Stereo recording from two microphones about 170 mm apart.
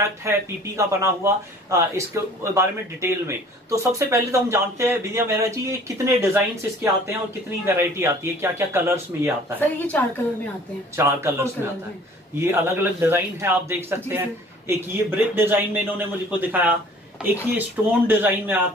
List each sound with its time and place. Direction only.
0.2 s speech: 15° right (ahead or behind)
9.8 s a woman's voice: 10° left (ahead or behind)
11.0 s speech: 15° right (ahead or behind)